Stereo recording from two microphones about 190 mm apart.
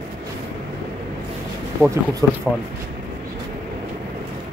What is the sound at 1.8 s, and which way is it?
Speech, 10° right (ahead or behind).